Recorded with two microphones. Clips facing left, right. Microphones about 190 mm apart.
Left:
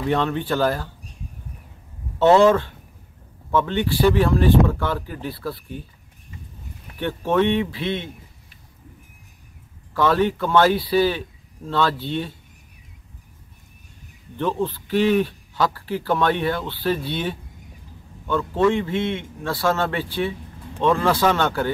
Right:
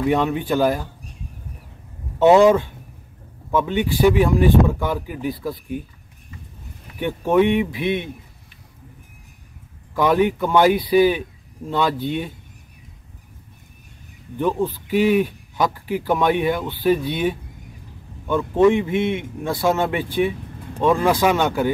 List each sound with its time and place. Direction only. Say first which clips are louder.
0.0 s a man's voice: right 3 dB; 10° right (ahead or behind)
2.1 s a man's voice: right 2 dB; 10° right (ahead or behind)
7.0 s a man's voice: right 3 dB; 10° right (ahead or behind)
9.9 s a man's voice: right 2 dB; 15° right (ahead or behind)
14.3 s a man's voice: right 2 dB; 10° right (ahead or behind)